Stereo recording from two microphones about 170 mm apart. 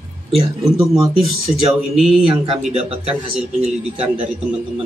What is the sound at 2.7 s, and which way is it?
Speech, 35° right (ahead or behind).